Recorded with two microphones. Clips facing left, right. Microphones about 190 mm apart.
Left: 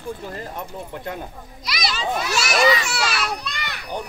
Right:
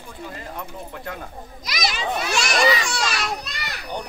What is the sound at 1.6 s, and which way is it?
Speech, 45° right (ahead or behind).